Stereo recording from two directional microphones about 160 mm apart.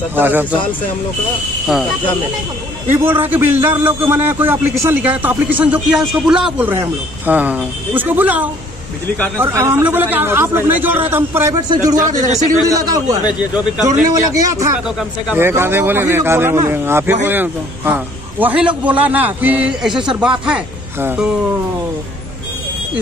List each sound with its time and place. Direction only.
0.1 s a man's voice: 10° right (ahead or behind)
2.9 s a man's voice: 15° right (ahead or behind)
12.0 s a man's voice: 55° right (ahead or behind)
12.6 s a man's voice: 20° right (ahead or behind)
13.4 s a man's voice: 10° right (ahead or behind)
14.3 s a man's voice: 20° right (ahead or behind)